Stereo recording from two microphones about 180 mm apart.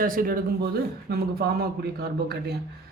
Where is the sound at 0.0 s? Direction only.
50° right (ahead or behind).